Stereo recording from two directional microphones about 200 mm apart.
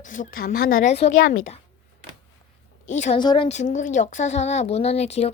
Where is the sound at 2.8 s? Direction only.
35° left (ahead or behind).